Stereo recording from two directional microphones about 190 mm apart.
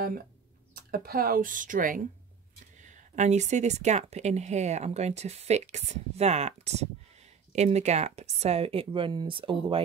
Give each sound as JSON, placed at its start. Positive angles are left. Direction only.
{"t": 0.9, "sound": "a woman's voice", "side_deg": -50}